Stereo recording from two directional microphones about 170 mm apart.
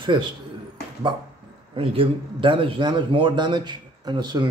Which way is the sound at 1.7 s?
30° right (ahead or behind).